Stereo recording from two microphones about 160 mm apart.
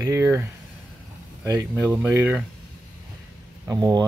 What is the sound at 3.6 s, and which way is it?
Speech, 25° right (ahead or behind).